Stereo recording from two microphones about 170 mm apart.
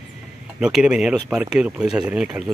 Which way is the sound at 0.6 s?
5° right (ahead or behind).